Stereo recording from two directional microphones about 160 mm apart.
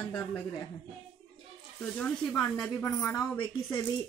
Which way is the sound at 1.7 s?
5° left (ahead or behind).